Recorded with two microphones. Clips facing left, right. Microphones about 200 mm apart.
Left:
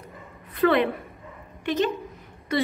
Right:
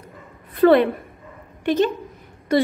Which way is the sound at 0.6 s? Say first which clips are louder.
Right 7 dB; 40° right (ahead or behind).